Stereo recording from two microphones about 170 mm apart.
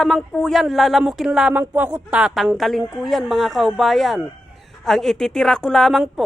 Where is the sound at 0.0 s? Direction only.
5° left (ahead or behind).